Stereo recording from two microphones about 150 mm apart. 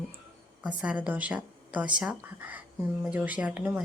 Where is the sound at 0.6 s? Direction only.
5° right (ahead or behind).